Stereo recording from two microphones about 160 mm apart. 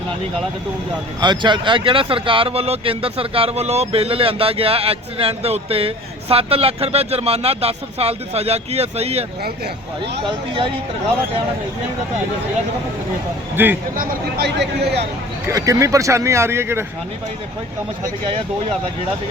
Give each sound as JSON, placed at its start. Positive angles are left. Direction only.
{"t": 1.2, "sound": "speech", "side_deg": -30}
{"t": 13.6, "sound": "speech", "side_deg": -10}
{"t": 13.9, "sound": "speech", "side_deg": -70}
{"t": 15.4, "sound": "speech", "side_deg": -20}